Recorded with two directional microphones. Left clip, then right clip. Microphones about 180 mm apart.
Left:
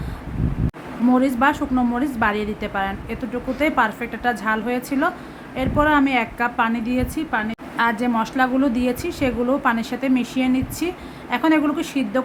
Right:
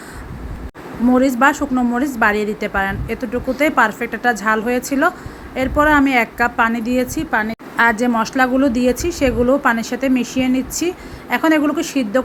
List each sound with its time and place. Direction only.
1.1 s a woman's voice: 15° right (ahead or behind)